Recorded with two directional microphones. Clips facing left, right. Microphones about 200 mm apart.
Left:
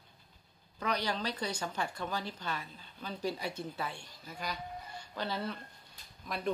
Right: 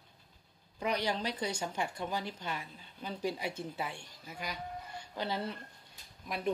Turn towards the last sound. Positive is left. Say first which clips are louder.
# right 1 dB
turn(degrees=-15)  # may be behind; listen again after turning